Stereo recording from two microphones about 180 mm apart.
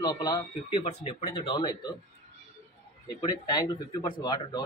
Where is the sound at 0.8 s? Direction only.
35° left (ahead or behind).